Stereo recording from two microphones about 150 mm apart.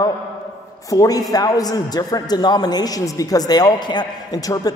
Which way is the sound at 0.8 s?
25° left (ahead or behind).